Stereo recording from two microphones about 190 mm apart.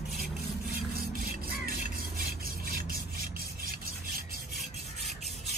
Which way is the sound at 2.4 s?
50° right (ahead or behind).